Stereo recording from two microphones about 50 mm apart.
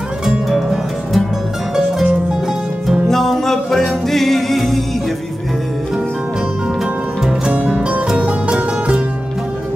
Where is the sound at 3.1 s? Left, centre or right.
Centre.